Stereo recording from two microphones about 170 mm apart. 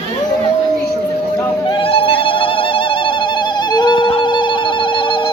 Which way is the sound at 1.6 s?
30° left (ahead or behind).